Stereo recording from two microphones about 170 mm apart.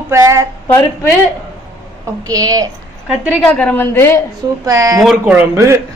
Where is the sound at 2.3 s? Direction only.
20° right (ahead or behind).